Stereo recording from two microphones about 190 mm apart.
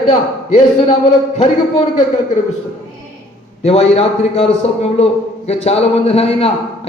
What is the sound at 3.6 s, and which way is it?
A man's voice, 30° left (ahead or behind).